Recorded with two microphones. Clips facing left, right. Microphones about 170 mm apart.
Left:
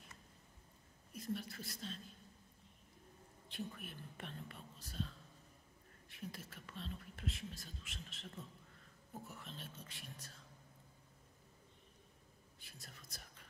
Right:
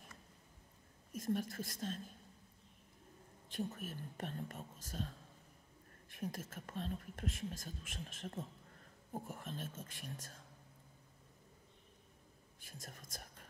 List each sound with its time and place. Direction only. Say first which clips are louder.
1.1 s speech: right 6 dB; 45° right (ahead or behind)
3.4 s speech: right 5 dB; 45° right (ahead or behind)
12.5 s whispering: right 6 dB; 45° right (ahead or behind)